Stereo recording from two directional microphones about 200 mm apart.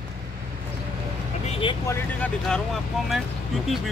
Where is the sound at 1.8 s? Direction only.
10° left (ahead or behind).